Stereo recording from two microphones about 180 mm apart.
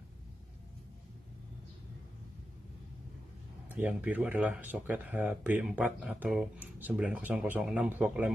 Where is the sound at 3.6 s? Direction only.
10° right (ahead or behind).